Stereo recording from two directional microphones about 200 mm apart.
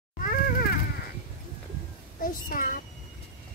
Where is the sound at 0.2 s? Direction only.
45° left (ahead or behind).